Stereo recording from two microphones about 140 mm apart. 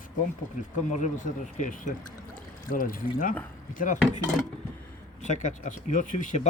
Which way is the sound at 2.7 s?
90° left.